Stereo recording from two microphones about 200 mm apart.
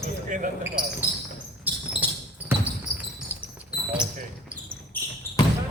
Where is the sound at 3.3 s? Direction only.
10° right (ahead or behind).